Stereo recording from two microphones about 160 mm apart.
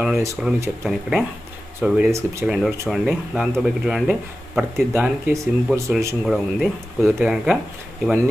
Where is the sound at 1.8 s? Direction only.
5° right (ahead or behind).